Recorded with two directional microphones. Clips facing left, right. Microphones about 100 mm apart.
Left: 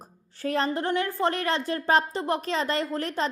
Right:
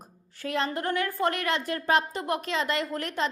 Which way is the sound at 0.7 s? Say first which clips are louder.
Left 2 dB; 25° left (ahead or behind).